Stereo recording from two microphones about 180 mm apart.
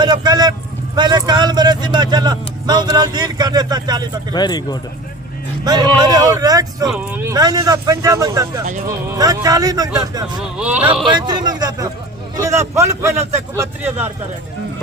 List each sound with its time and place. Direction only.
0.0 s speech: 25° right (ahead or behind)
4.4 s speech: 25° left (ahead or behind)
5.6 s speech: 20° right (ahead or behind)
6.8 s speech: centre (ahead or behind)
7.2 s speech: 20° right (ahead or behind)
10.6 s speech: 10° right (ahead or behind)
11.0 s speech: 25° right (ahead or behind)